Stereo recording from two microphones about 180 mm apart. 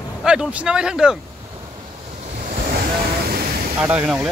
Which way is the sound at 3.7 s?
10° right (ahead or behind).